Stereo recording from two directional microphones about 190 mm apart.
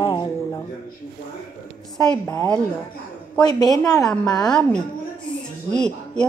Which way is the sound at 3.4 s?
20° left (ahead or behind).